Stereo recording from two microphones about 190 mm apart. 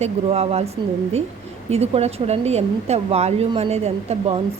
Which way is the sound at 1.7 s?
35° right (ahead or behind).